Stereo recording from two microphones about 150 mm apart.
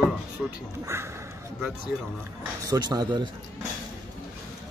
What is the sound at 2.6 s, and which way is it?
Speech, 25° right (ahead or behind).